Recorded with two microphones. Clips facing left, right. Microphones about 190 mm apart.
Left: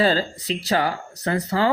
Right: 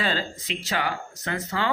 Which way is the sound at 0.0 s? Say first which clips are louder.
Left 8 dB; 35° left (ahead or behind).